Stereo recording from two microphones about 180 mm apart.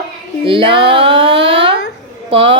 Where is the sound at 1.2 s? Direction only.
80° right.